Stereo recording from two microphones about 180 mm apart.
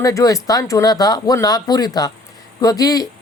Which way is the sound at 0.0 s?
20° left (ahead or behind).